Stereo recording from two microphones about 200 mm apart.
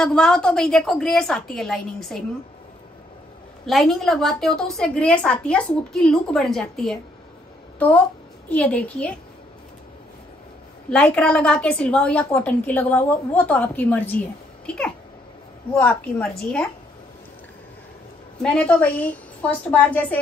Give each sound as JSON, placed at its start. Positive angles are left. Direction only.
{"t": 0.0, "sound": "a woman's voice", "side_deg": 5}
{"t": 3.6, "sound": "a woman's voice", "side_deg": 0}
{"t": 8.5, "sound": "a woman's voice", "side_deg": 5}
{"t": 10.9, "sound": "a woman's voice", "side_deg": 5}
{"t": 15.7, "sound": "a woman's voice", "side_deg": 5}
{"t": 18.4, "sound": "a woman's voice", "side_deg": 5}